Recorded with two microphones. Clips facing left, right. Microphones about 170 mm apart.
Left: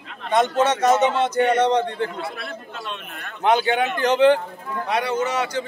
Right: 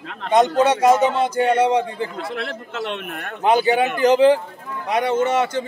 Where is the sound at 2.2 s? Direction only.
85° right; by 3.4 s 55° right (ahead or behind).